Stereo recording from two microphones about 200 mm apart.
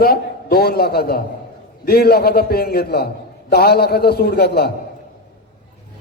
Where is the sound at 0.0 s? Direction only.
50° left (ahead or behind).